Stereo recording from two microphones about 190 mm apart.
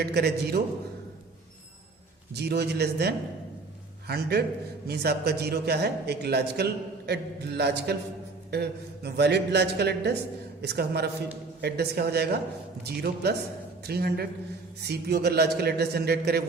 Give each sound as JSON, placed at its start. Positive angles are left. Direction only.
{"t": 0.0, "sound": "a man's voice", "side_deg": -60}
{"t": 2.3, "sound": "a man's voice", "side_deg": -60}